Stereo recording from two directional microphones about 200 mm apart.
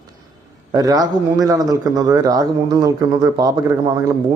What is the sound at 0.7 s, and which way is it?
A man's voice, 15° right (ahead or behind).